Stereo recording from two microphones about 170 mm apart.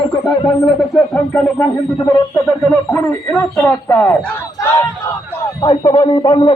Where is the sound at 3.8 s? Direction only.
15° left (ahead or behind).